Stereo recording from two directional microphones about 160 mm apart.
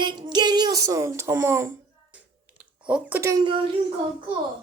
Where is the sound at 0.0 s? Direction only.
30° right (ahead or behind).